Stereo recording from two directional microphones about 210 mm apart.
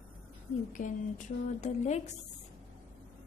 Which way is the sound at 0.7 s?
35° left (ahead or behind).